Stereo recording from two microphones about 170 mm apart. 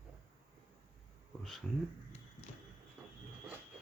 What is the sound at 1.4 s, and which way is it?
Speech, centre (ahead or behind).